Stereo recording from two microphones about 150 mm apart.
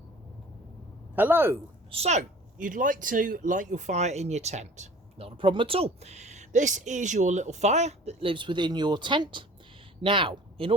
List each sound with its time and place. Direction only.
1.1 s speech: 15° right (ahead or behind)
1.9 s speech: 45° right (ahead or behind)